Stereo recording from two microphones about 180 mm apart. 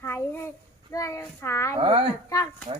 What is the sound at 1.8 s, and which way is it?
Speech, 30° right (ahead or behind).